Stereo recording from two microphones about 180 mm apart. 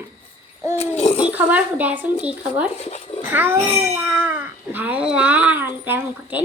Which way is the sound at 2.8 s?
35° left (ahead or behind).